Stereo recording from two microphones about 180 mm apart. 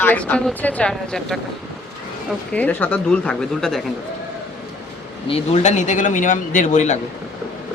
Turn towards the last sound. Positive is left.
turn(degrees=45)  # may be behind; listen again after turning